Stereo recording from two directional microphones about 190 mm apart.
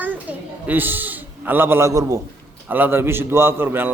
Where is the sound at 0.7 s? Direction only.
10° right (ahead or behind).